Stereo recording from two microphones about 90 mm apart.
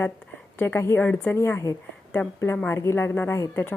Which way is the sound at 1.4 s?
30° left (ahead or behind).